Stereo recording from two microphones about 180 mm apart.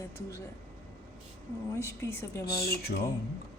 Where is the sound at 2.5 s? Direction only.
60° left (ahead or behind).